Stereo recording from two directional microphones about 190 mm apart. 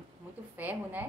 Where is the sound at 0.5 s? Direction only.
10° right (ahead or behind).